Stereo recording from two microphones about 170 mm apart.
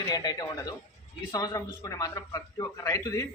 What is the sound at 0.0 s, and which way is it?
A man's voice, 20° left (ahead or behind).